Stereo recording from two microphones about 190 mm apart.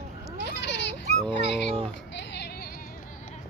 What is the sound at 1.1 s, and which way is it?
Dog, 25° right (ahead or behind).